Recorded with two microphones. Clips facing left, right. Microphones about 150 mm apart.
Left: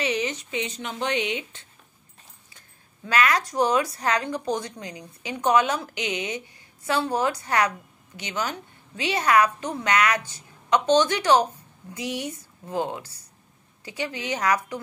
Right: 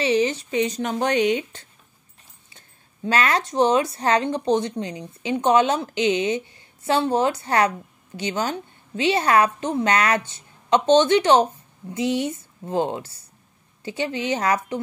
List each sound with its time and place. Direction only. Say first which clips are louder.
0.0 s speech: right 6 dB; 30° right (ahead or behind)
3.1 s speech: right 2 dB; 30° right (ahead or behind)